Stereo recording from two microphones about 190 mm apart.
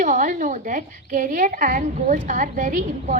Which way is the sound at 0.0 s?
45° right (ahead or behind).